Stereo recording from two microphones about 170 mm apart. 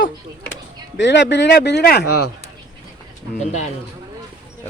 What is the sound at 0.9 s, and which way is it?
Speech, 90° left.